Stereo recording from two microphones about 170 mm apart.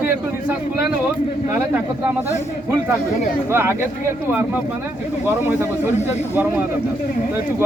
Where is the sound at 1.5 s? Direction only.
15° right (ahead or behind).